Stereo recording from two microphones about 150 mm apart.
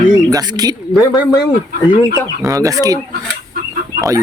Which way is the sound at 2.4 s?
20° right (ahead or behind).